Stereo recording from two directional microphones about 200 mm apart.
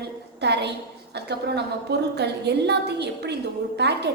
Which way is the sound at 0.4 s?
60° right (ahead or behind).